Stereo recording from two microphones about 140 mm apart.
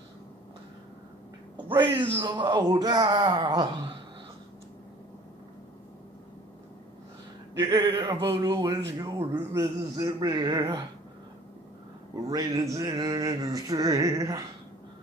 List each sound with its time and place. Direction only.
2.2 s speech: 30° right (ahead or behind)
7.5 s a man's voice: 35° right (ahead or behind)
12.3 s a man's voice: 30° right (ahead or behind)